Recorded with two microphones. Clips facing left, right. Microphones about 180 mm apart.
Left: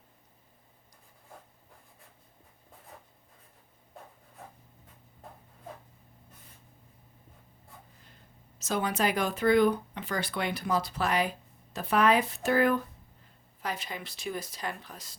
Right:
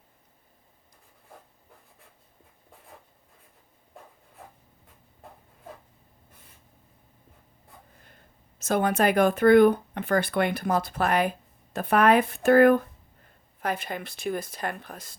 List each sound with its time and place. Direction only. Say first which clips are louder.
8.0 s speech: right 1 dB; 55° right (ahead or behind)